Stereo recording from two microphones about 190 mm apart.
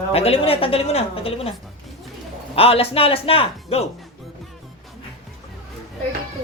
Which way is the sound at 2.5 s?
30° left (ahead or behind).